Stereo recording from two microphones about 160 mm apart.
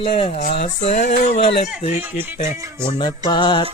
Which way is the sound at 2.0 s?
10° right (ahead or behind).